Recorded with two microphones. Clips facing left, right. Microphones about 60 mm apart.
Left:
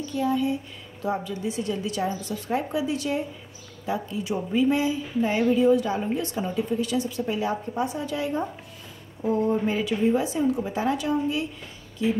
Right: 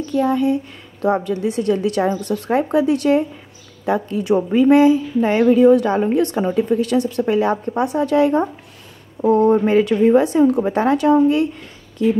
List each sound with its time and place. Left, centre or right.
0.1 s a woman's voice: right